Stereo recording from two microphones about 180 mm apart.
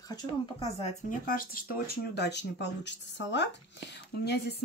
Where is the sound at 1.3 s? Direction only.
50° left (ahead or behind).